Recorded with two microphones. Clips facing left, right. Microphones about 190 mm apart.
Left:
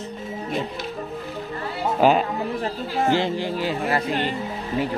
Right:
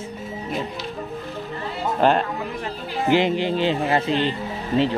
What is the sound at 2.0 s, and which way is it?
Speech, 5° left (ahead or behind).